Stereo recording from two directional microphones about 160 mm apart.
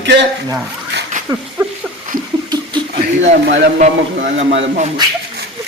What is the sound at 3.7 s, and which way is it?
Speech, 50° right (ahead or behind).